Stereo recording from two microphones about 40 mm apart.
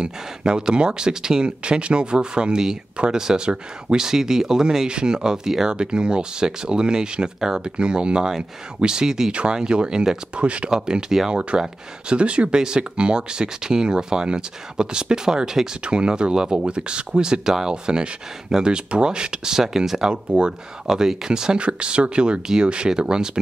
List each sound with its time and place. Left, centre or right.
0.0 s speech: right
9.3 s speech: right
10.7 s speech: centre
12.1 s speech: right; by 20.1 s centre
20.1 s speech: right